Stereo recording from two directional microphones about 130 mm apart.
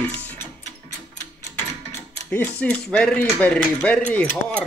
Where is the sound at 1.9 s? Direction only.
15° left (ahead or behind).